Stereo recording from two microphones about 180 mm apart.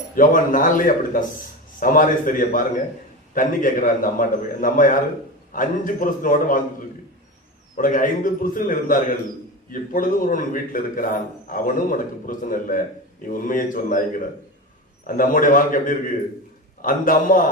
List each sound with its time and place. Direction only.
0.2 s a man's voice: 50° left (ahead or behind)
15.0 s a man's voice: 50° left (ahead or behind)